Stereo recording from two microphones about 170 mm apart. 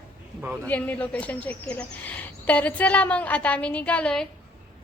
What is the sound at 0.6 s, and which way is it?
A woman's voice, 10° left (ahead or behind).